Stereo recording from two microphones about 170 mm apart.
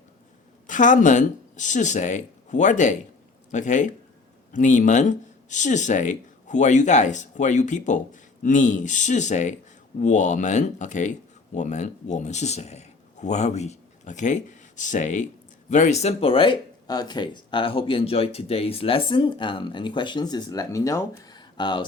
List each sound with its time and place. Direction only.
0.7 s speech: 50° left (ahead or behind); by 21.8 s 25° left (ahead or behind)